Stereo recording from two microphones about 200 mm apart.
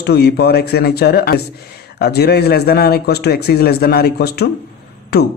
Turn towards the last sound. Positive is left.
turn(degrees=50)  # may be behind; listen again after turning